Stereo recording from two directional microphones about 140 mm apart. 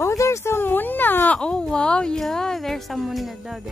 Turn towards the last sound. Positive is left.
turn(degrees=0)  # may be behind; listen again after turning